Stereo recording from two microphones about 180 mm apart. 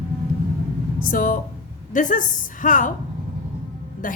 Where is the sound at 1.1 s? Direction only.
50° left (ahead or behind).